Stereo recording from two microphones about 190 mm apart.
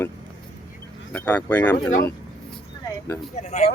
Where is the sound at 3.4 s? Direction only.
35° left (ahead or behind).